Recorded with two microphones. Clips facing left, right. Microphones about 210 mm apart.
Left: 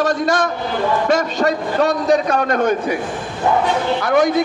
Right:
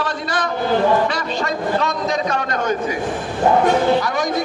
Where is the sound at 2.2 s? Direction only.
55° left (ahead or behind).